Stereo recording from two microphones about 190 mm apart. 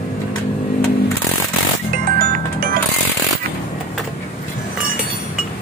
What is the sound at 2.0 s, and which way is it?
Music, 50° right (ahead or behind).